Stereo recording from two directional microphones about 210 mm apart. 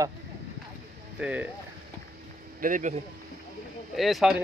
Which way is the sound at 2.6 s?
35° right (ahead or behind).